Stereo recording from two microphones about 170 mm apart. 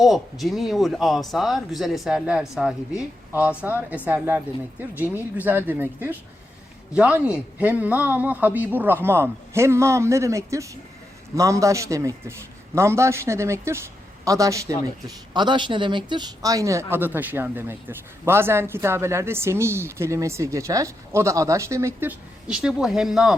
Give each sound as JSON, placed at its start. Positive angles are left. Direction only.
{"t": 0.0, "sound": "a man's voice", "side_deg": 0}
{"t": 22.4, "sound": "a man's voice", "side_deg": -5}